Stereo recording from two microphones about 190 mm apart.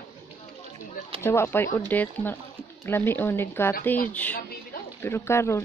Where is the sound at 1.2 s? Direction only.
15° left (ahead or behind).